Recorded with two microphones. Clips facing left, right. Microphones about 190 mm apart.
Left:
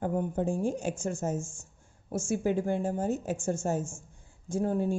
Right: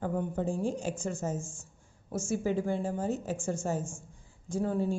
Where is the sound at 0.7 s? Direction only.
50° left (ahead or behind).